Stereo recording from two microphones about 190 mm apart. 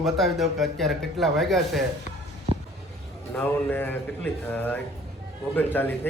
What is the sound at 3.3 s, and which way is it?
A man's voice, 10° left (ahead or behind).